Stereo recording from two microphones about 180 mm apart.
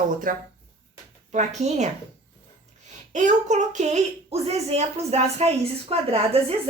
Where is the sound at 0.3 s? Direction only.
50° right (ahead or behind).